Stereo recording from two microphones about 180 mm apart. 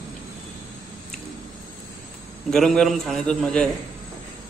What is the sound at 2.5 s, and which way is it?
A man's voice, centre (ahead or behind).